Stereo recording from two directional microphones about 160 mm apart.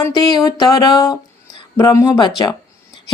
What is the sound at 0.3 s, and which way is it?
Speech, 25° left (ahead or behind).